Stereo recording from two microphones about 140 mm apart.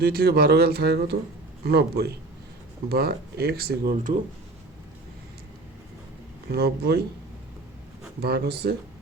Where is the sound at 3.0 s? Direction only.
90° right.